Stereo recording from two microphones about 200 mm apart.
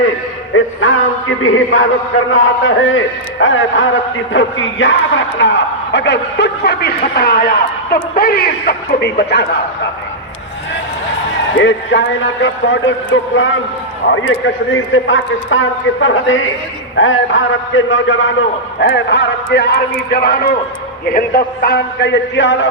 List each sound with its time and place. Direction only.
0.5 s a man's voice: 75° left (ahead or behind); by 9.5 s 55° left (ahead or behind)
11.5 s a man's voice: 65° left (ahead or behind)
18.8 s a man's voice: 60° left (ahead or behind)